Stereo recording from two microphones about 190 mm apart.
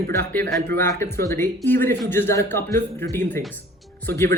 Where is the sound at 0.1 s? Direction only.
10° left (ahead or behind).